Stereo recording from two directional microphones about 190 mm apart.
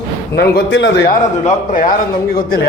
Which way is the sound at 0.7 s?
75° left (ahead or behind).